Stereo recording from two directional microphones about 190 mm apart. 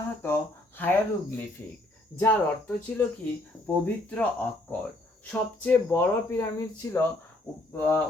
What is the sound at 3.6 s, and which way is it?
Speech, 5° left (ahead or behind).